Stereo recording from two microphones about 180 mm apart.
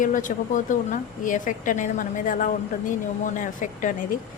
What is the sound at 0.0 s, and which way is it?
A woman's voice, 45° left (ahead or behind).